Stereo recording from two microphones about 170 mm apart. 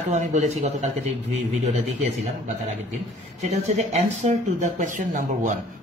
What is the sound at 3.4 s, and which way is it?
Speech, 40° right (ahead or behind).